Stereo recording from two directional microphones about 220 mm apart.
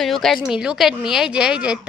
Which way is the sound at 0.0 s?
Centre (ahead or behind).